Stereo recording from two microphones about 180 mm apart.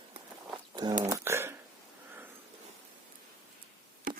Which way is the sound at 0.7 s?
25° right (ahead or behind).